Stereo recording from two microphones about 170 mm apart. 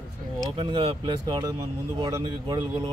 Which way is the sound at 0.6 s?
30° right (ahead or behind).